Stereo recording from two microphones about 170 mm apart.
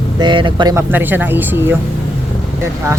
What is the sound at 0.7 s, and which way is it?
A woman's voice, 10° right (ahead or behind).